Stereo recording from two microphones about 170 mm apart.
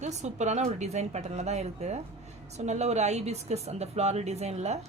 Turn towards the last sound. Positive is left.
turn(degrees=-40)  # may be behind; listen again after turning